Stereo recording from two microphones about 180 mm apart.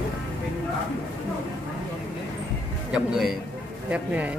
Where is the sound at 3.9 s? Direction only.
10° right (ahead or behind).